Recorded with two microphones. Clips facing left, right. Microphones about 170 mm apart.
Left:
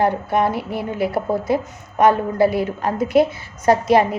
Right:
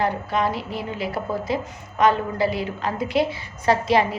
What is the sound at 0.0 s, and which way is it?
A woman's voice, 55° left (ahead or behind).